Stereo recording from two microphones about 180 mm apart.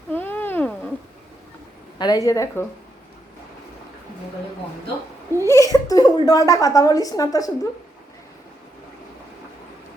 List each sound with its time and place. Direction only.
0.1 s a sound: 10° left (ahead or behind)
2.0 s a woman's voice: 20° left (ahead or behind)
5.4 s a woman's voice: 15° left (ahead or behind)